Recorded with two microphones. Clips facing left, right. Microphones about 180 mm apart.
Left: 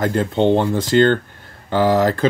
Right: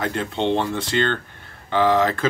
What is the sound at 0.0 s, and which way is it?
Speech, 45° left (ahead or behind).